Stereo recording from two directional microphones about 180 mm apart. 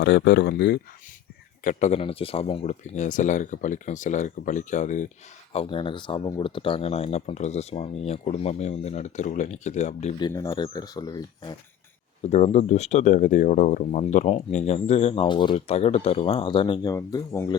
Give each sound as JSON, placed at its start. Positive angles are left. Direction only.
{"t": 0.0, "sound": "speech", "side_deg": 70}
{"t": 1.6, "sound": "speech", "side_deg": 40}
{"t": 5.5, "sound": "speech", "side_deg": 25}
{"t": 10.2, "sound": "speech", "side_deg": 20}
{"t": 12.2, "sound": "speech", "side_deg": 40}